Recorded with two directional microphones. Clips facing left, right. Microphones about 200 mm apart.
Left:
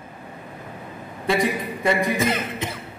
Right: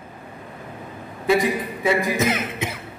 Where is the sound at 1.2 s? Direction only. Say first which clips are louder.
Right 2 dB; 5° right (ahead or behind).